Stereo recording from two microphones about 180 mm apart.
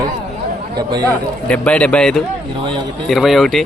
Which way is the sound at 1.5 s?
5° left (ahead or behind).